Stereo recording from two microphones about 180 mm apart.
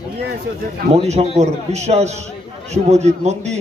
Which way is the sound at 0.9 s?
35° right (ahead or behind).